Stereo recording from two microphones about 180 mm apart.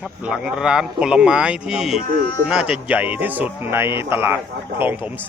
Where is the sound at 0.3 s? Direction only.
5° right (ahead or behind).